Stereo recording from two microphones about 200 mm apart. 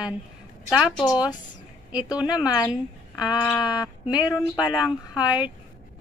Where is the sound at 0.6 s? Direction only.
5° right (ahead or behind).